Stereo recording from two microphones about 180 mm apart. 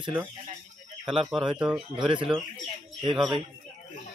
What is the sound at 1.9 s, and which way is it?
Speech, 30° right (ahead or behind).